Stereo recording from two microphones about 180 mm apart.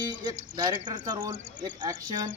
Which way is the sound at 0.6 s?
25° right (ahead or behind).